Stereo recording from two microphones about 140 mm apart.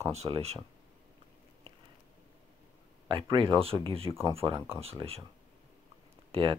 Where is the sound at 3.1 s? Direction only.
35° right (ahead or behind).